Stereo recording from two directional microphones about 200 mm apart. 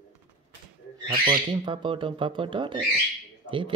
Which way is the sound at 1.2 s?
25° right (ahead or behind).